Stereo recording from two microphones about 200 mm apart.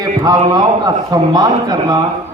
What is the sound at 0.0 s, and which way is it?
A man's voice, 20° right (ahead or behind).